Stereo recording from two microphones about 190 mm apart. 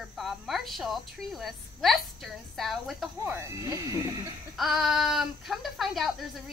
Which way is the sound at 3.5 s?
20° right (ahead or behind).